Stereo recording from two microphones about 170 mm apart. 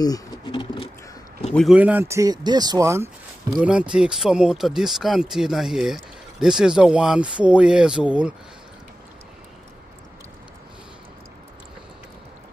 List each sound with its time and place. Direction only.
0.0 s a sound: 25° left (ahead or behind)
1.5 s speech: centre (ahead or behind)
1.8 s speech: 10° right (ahead or behind)
3.5 s speech: 5° right (ahead or behind)